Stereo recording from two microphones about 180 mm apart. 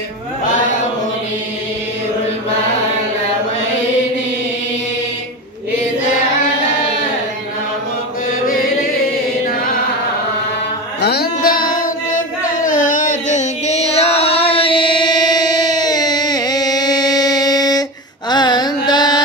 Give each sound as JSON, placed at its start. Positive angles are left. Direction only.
{"t": 8.5, "sound": "music", "side_deg": 50}
{"t": 11.0, "sound": "music", "side_deg": 60}
{"t": 18.3, "sound": "carnatic music", "side_deg": 25}